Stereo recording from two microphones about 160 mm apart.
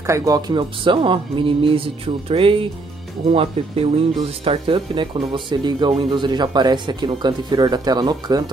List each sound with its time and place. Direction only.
0.0 s speech: 20° right (ahead or behind)